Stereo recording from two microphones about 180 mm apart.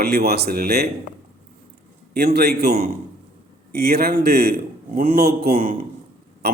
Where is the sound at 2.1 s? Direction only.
60° right (ahead or behind).